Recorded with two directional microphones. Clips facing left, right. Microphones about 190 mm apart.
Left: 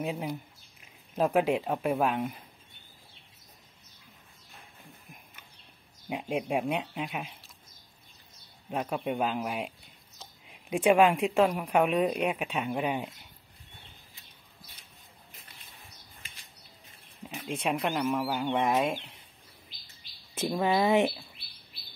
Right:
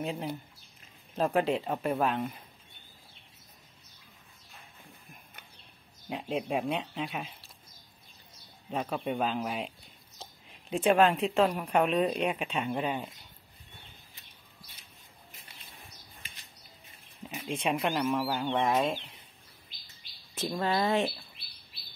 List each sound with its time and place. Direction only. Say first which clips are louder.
0.0 s speech: left 1 dB; 10° left (ahead or behind)
6.0 s speech: left 1 dB; 10° left (ahead or behind)
8.6 s speech: left 1 dB; 10° left (ahead or behind)
17.3 s a sound: even; centre (ahead or behind)
17.6 s speech: even; centre (ahead or behind)
20.3 s speech: left 3 dB; 15° left (ahead or behind)